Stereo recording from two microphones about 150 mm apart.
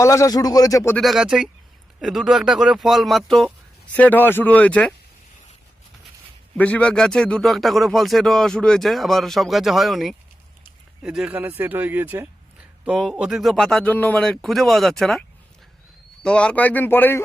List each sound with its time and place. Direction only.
0.0 s a man's voice: 20° left (ahead or behind)
0.9 s a man's voice: centre (ahead or behind)
6.6 s a man's voice: 10° left (ahead or behind)
16.2 s speech: 5° left (ahead or behind)